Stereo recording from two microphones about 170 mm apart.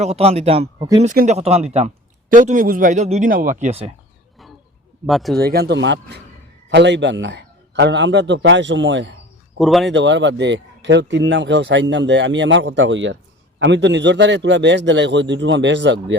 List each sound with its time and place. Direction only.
0.0 s speech: 40° right (ahead or behind)
2.3 s speech: 50° right (ahead or behind)
5.0 s speech: centre (ahead or behind)
5.4 s speech: 65° right (ahead or behind); by 9.0 s 90° right
9.6 s speech: centre (ahead or behind)
9.9 s speech: 90° right